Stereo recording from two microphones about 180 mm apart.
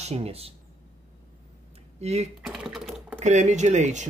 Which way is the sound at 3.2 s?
40° right (ahead or behind).